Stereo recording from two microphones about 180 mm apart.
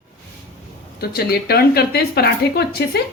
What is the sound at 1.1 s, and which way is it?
Speech, 60° left (ahead or behind).